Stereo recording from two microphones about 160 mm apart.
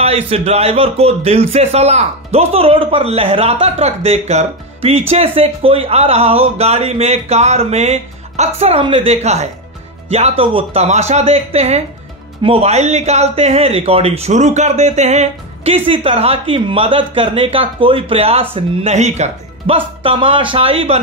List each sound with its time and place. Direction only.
0.0 s a man's voice: 40° right (ahead or behind)